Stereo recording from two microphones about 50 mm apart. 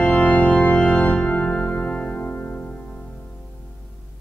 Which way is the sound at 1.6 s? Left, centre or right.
Left.